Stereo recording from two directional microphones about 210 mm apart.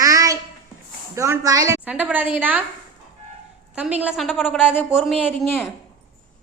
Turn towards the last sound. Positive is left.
turn(degrees=0)  # may be behind; listen again after turning